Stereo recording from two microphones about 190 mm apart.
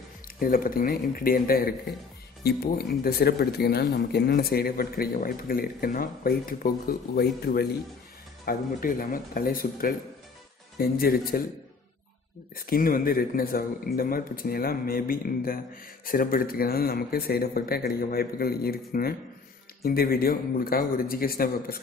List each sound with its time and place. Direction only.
0.4 s speech: 50° left (ahead or behind)
12.5 s speech: 50° left (ahead or behind)